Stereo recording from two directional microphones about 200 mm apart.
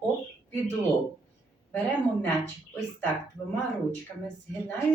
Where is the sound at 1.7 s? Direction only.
10° left (ahead or behind).